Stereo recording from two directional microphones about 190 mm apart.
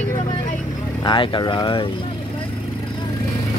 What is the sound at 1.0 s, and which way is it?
Speech, 25° left (ahead or behind).